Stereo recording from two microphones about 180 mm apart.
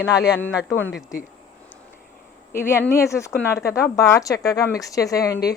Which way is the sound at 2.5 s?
15° left (ahead or behind).